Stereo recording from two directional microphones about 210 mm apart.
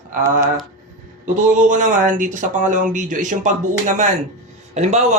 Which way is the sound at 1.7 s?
35° right (ahead or behind).